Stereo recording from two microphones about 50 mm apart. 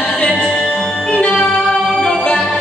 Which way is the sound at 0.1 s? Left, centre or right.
Left.